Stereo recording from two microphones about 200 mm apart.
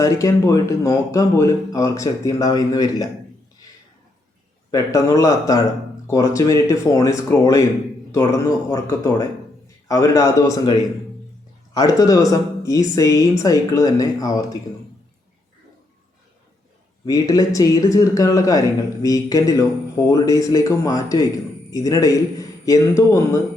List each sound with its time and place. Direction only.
0.0 s speech: 15° left (ahead or behind)
4.7 s speech: 15° left (ahead or behind)
17.1 s speech: 20° left (ahead or behind)